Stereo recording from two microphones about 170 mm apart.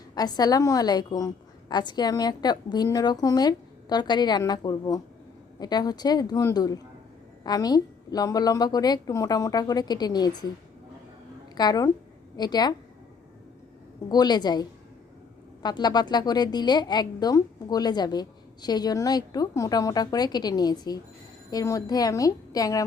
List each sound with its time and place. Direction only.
0.1 s a woman's voice: 25° left (ahead or behind)
11.5 s a woman's voice: 25° left (ahead or behind)
14.1 s a woman's voice: 25° left (ahead or behind)